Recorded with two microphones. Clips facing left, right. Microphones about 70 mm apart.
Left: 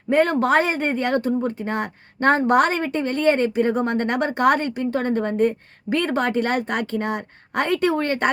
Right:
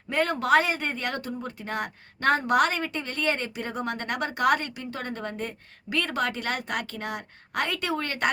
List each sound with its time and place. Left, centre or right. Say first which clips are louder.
0.1 s speech: left 5 dB; left